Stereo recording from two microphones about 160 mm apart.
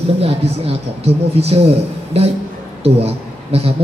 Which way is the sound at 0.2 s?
40° right (ahead or behind).